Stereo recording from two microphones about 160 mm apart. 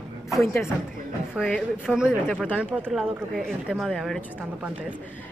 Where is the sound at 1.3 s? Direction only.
5° left (ahead or behind).